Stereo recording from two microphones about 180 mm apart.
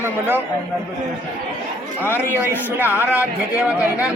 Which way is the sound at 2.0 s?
10° left (ahead or behind).